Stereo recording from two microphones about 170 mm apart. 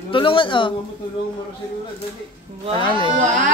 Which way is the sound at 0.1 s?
30° left (ahead or behind).